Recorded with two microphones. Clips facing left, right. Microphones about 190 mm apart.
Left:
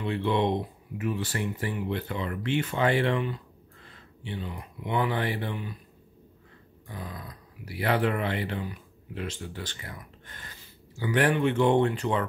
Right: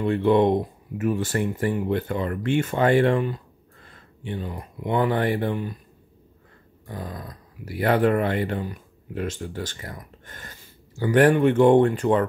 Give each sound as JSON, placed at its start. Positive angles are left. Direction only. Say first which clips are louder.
{"t": 0.0, "sound": "speech", "louder": "right 7 dB", "side_deg": -50}
{"t": 6.9, "sound": "speech", "louder": "right 5 dB", "side_deg": -45}